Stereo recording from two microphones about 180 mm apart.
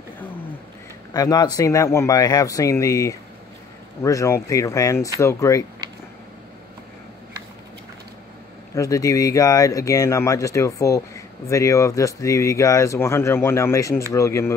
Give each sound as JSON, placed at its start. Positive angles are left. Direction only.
{"t": 1.1, "sound": "speech", "side_deg": 20}
{"t": 8.7, "sound": "speech", "side_deg": 20}